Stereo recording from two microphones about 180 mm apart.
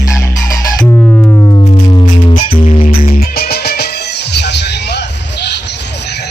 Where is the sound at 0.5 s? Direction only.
20° left (ahead or behind).